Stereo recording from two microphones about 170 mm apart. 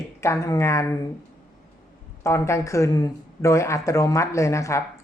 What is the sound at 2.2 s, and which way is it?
Speech, 15° left (ahead or behind).